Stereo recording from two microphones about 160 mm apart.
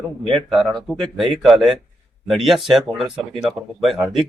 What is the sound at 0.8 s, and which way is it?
Speech, centre (ahead or behind).